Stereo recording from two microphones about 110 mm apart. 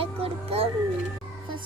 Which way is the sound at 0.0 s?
60° right (ahead or behind).